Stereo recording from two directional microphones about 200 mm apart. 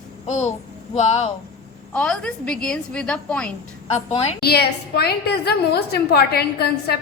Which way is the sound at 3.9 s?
35° left (ahead or behind).